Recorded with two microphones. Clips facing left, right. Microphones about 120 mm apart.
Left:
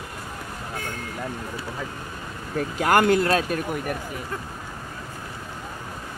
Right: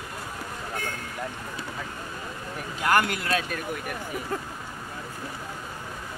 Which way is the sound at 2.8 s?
40° left (ahead or behind).